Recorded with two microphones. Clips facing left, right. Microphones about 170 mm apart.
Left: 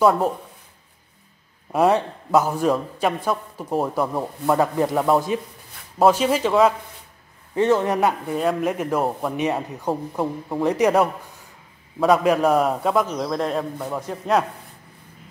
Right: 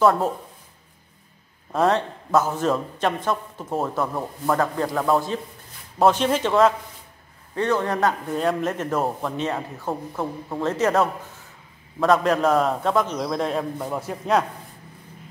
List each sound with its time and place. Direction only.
0.0 s a man's voice: centre (ahead or behind)
2.0 s a man's voice: 15° left (ahead or behind)
2.7 s a man's voice: 5° left (ahead or behind)
4.1 s a man's voice: 15° left (ahead or behind)
5.9 s a man's voice: 5° left (ahead or behind)
7.5 s a man's voice: 20° left (ahead or behind)
8.3 s a man's voice: 5° left (ahead or behind)
9.5 s a man's voice: 20° left (ahead or behind); by 14.4 s 5° right (ahead or behind)